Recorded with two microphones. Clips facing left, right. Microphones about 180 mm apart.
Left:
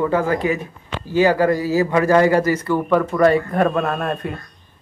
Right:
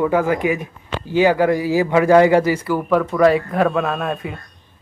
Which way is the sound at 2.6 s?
Centre (ahead or behind).